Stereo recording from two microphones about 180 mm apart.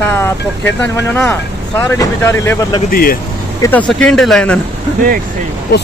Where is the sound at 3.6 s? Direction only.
10° left (ahead or behind).